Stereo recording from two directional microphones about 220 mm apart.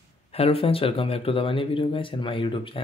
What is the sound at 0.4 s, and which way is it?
Speech, 25° left (ahead or behind).